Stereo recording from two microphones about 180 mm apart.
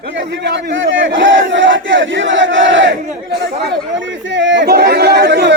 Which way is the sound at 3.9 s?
90° right.